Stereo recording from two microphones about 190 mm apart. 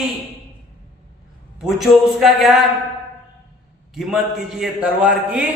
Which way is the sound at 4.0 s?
Centre (ahead or behind).